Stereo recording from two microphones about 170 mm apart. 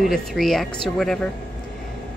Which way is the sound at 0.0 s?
Centre (ahead or behind).